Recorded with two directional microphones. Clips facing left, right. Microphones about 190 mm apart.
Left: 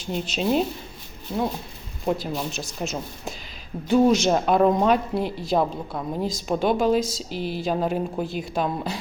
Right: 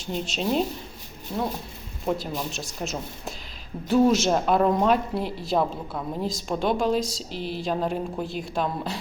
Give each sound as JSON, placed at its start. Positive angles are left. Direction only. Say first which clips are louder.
{"t": 0.0, "sound": "speech", "louder": "left 2 dB", "side_deg": 0}